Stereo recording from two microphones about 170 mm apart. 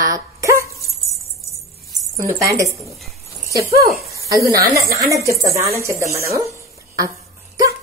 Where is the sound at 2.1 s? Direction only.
15° right (ahead or behind).